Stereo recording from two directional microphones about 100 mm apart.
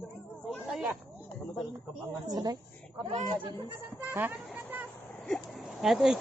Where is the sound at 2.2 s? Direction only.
40° right (ahead or behind).